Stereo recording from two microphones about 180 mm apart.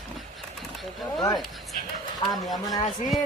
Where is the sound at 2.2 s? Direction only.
25° left (ahead or behind).